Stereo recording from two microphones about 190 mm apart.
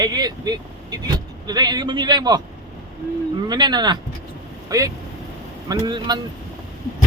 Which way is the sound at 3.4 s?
20° right (ahead or behind).